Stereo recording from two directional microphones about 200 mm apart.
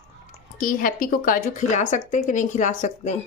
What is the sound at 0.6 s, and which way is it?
A woman's voice, 45° left (ahead or behind).